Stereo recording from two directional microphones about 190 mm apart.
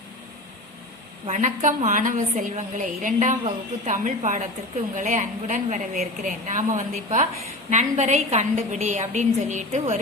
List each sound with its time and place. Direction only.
1.3 s a woman's voice: 40° right (ahead or behind)